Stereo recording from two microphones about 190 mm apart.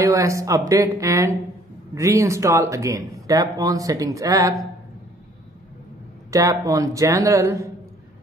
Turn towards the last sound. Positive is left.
turn(degrees=-15)  # may be behind; listen again after turning